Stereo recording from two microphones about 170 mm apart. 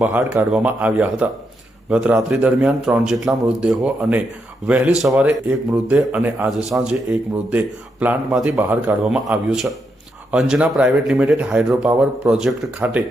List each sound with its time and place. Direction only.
0.0 s speech: 10° right (ahead or behind)